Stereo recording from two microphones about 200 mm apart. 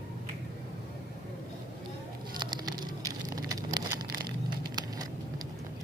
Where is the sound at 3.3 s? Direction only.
20° right (ahead or behind).